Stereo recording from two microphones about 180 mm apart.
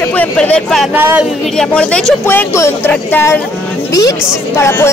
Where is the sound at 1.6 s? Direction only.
5° left (ahead or behind).